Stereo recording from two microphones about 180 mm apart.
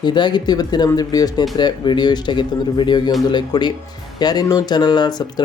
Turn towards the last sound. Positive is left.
turn(degrees=25)  # may be behind; listen again after turning